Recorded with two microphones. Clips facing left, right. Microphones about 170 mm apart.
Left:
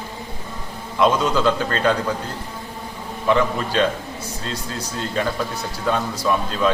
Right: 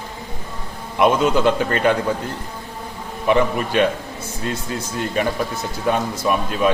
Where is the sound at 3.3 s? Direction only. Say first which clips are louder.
Right 2 dB; 15° right (ahead or behind).